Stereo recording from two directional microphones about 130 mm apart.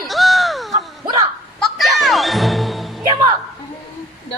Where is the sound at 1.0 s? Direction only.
30° right (ahead or behind).